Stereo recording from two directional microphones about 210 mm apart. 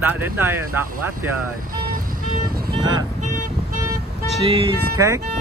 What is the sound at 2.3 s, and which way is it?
Vehicle, 45° right (ahead or behind).